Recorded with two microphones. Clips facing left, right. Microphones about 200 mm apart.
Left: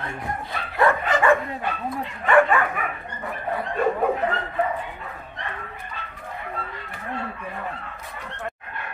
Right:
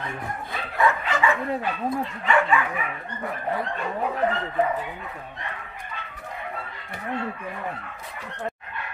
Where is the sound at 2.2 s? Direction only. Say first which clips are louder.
Left 5 dB; 55° left (ahead or behind).